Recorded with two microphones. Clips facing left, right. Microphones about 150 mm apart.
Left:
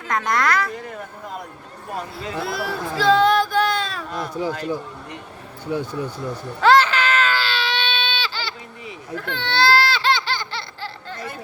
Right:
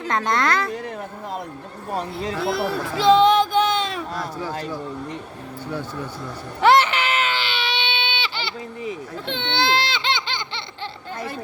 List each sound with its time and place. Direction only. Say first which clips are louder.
0.3 s speech: left 1 dB; 25° right (ahead or behind)
1.9 s speech: right 3 dB; 30° right (ahead or behind)
2.4 s a sound: right 3 dB; 25° right (ahead or behind)
4.4 s speech: left 8 dB; 15° left (ahead or behind)
5.7 s speech: left 5 dB; 15° left (ahead or behind)
6.6 s baby cry: left 1 dB; 15° right (ahead or behind)
9.1 s baby laughter: left 3 dB; 20° right (ahead or behind)